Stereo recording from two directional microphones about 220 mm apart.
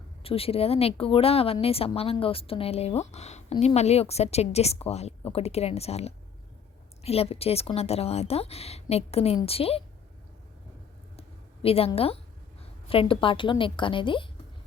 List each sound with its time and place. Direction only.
0.2 s speech: 25° left (ahead or behind)
11.2 s a sound: 25° left (ahead or behind)
12.9 s speech: 25° left (ahead or behind)